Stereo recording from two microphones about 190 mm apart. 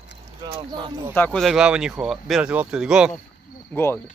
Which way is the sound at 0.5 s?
25° right (ahead or behind).